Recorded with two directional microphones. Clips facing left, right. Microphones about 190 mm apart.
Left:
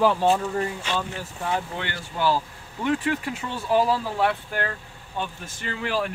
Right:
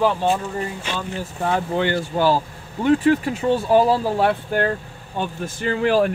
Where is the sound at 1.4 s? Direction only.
35° right (ahead or behind).